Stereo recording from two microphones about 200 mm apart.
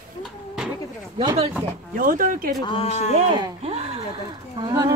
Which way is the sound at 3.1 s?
25° right (ahead or behind).